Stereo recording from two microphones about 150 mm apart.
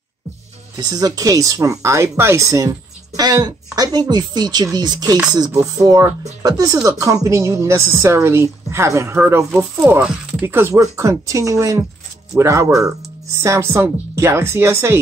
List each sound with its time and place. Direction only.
0.7 s speech: 25° right (ahead or behind)